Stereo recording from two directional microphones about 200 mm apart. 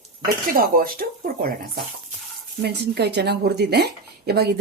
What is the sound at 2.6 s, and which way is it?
Speech, 55° right (ahead or behind).